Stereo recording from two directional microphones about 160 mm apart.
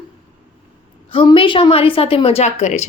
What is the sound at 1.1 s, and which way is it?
A woman's voice, 30° left (ahead or behind).